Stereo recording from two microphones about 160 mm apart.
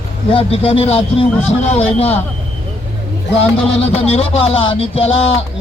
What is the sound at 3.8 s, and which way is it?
Speech, 40° left (ahead or behind).